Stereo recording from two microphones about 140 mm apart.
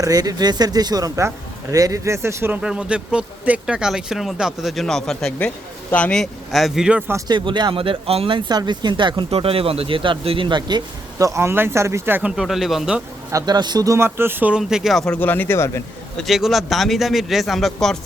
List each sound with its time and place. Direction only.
0.0 s a man's voice: 25° right (ahead or behind); by 7.0 s 5° right (ahead or behind)
7.3 s speech: 35° right (ahead or behind); by 12.3 s 15° right (ahead or behind)
12.4 s speech: centre (ahead or behind)
13.3 s speech: 30° right (ahead or behind); by 15.8 s 20° left (ahead or behind)
16.1 s speech: centre (ahead or behind)